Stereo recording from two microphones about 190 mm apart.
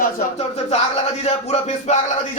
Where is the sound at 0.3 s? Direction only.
35° left (ahead or behind).